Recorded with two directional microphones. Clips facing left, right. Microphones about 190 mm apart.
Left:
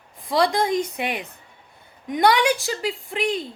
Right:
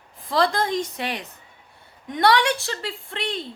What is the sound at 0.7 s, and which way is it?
A woman's voice, 10° left (ahead or behind).